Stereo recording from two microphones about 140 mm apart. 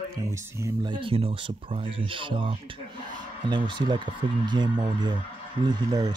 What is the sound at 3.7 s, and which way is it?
Speech, 35° right (ahead or behind).